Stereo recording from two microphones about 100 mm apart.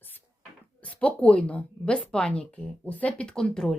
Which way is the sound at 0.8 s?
15° left (ahead or behind).